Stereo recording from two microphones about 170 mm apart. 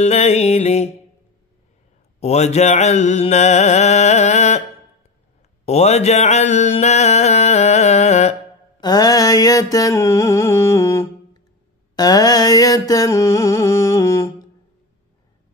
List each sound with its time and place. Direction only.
0.0 s mantra: 40° left (ahead or behind)
2.1 s mantra: 40° left (ahead or behind)
5.7 s mantra: 40° left (ahead or behind)
8.8 s mantra: 25° left (ahead or behind)